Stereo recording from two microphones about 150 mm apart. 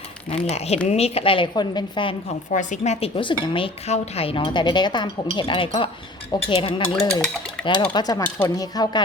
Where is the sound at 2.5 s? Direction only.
55° left (ahead or behind).